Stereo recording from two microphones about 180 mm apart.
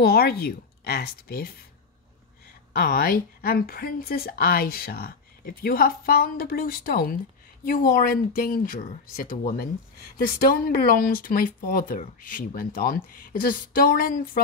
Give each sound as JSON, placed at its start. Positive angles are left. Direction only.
{"t": 0.0, "sound": "a woman's voice", "side_deg": 60}
{"t": 2.7, "sound": "speech", "side_deg": 60}
{"t": 10.0, "sound": "speech", "side_deg": 55}